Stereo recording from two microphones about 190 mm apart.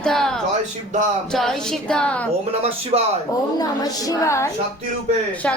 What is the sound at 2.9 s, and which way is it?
Speech, 30° right (ahead or behind).